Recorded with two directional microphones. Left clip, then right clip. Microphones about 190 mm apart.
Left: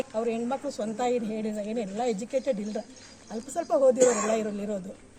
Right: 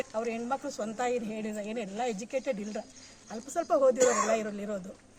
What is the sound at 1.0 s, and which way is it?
Speech, 35° right (ahead or behind).